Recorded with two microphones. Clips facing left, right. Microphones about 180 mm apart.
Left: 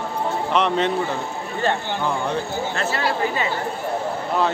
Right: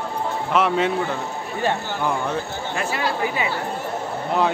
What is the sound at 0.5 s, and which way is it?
Speech, 5° right (ahead or behind).